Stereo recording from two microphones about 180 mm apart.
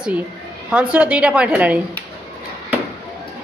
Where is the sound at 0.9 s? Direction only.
5° right (ahead or behind).